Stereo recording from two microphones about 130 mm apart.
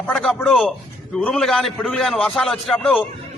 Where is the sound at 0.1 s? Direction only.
5° left (ahead or behind).